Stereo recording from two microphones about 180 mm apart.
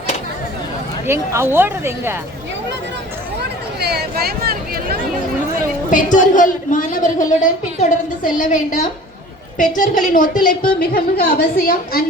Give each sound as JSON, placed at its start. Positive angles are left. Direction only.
{"t": 1.0, "sound": "speech", "side_deg": -15}
{"t": 3.8, "sound": "speech", "side_deg": -65}
{"t": 5.9, "sound": "a woman's voice", "side_deg": 45}